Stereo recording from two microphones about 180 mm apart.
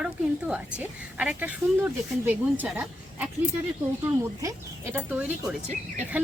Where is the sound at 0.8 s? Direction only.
5° right (ahead or behind).